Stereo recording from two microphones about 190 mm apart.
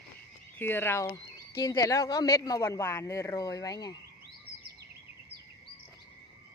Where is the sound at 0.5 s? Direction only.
10° left (ahead or behind).